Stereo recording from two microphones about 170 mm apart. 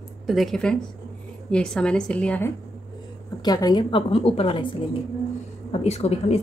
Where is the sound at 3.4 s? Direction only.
25° left (ahead or behind).